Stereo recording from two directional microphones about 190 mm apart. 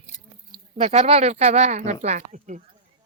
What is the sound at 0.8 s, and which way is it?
Speech, 30° right (ahead or behind).